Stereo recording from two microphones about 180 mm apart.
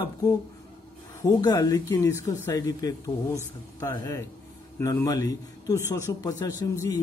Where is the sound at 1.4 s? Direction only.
20° left (ahead or behind).